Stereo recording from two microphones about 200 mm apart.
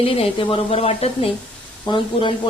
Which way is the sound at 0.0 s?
30° left (ahead or behind).